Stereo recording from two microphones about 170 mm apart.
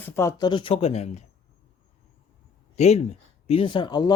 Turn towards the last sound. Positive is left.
turn(degrees=25)  # may be behind; listen again after turning